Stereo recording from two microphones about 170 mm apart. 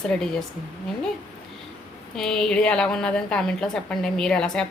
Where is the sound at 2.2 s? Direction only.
5° left (ahead or behind).